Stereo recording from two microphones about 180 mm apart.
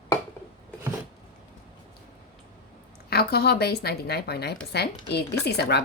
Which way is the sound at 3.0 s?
60° left (ahead or behind).